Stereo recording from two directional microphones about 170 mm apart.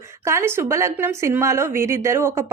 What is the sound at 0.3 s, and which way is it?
A woman's voice, 15° right (ahead or behind).